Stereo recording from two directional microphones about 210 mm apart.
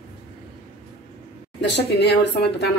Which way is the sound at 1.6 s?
55° left (ahead or behind).